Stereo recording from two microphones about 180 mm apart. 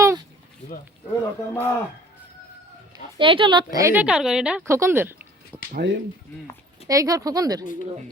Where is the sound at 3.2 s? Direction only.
30° right (ahead or behind); by 5.1 s 15° right (ahead or behind).